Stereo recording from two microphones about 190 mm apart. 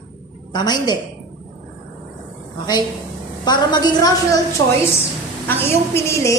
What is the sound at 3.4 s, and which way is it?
Speech, 20° left (ahead or behind).